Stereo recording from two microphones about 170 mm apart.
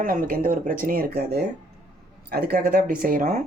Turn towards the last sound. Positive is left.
turn(degrees=-55)  # may be behind; listen again after turning